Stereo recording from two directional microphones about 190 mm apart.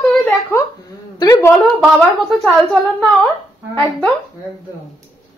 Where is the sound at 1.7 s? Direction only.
Centre (ahead or behind).